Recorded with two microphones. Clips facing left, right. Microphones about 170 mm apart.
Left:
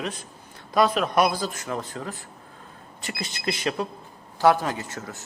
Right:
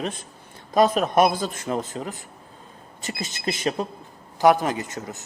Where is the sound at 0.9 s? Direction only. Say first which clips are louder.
Right 3 dB; 50° right (ahead or behind).